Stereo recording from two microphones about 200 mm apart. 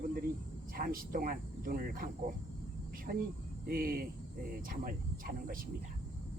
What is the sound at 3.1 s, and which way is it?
Speech, 45° right (ahead or behind).